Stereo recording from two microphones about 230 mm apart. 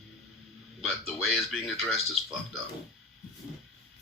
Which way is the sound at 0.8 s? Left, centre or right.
Centre.